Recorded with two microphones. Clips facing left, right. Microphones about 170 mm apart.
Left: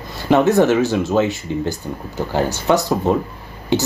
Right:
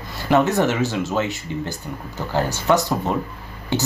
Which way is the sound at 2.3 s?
15° left (ahead or behind).